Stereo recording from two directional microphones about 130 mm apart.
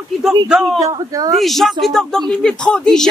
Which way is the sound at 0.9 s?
30° right (ahead or behind).